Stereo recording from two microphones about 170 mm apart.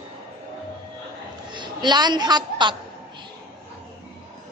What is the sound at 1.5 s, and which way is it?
A woman's voice, 25° right (ahead or behind).